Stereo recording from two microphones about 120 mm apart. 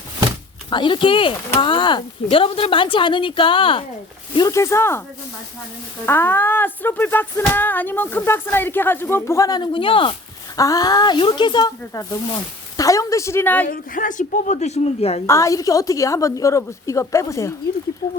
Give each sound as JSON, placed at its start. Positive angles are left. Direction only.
{"t": 0.7, "sound": "speech", "side_deg": 45}
{"t": 4.4, "sound": "a woman's voice", "side_deg": 30}
{"t": 6.1, "sound": "speech", "side_deg": 15}
{"t": 9.6, "sound": "speech", "side_deg": 45}
{"t": 10.6, "sound": "a woman's voice", "side_deg": 30}
{"t": 14.0, "sound": "a woman's voice", "side_deg": 90}
{"t": 15.3, "sound": "a woman's voice", "side_deg": 25}